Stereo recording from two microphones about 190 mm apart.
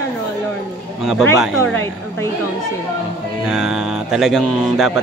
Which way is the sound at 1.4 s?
10° left (ahead or behind).